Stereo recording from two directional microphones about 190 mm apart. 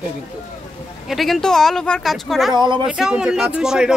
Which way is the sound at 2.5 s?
25° right (ahead or behind).